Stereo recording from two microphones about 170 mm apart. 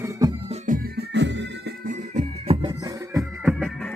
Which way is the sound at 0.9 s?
90° right.